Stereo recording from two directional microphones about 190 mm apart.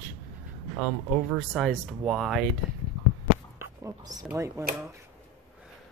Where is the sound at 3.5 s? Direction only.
20° right (ahead or behind).